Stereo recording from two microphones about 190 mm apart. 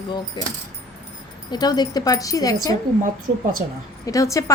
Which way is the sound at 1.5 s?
20° left (ahead or behind).